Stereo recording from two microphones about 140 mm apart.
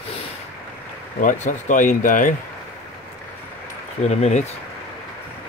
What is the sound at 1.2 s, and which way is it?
Speech, 65° left (ahead or behind).